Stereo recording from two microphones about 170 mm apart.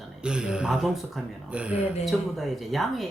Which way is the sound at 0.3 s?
5° right (ahead or behind).